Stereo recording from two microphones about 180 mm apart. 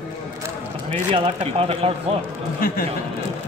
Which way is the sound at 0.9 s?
30° right (ahead or behind).